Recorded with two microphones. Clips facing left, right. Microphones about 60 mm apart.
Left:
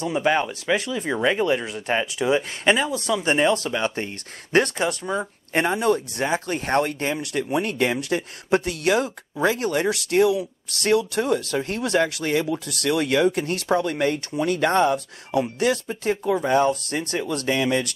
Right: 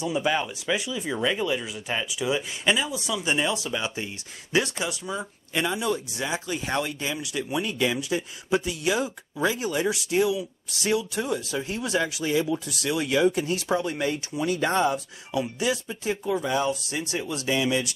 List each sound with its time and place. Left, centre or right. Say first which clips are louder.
0.1 s speech: left 5 dB; left
0.7 s speech: left 4 dB; left
1.1 s speech: left 5 dB; left
2.1 s speech: left 5 dB; left